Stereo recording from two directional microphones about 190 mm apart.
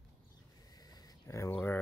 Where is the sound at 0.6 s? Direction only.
20° left (ahead or behind).